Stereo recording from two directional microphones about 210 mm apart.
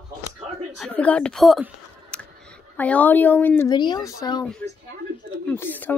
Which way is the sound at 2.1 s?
5° left (ahead or behind).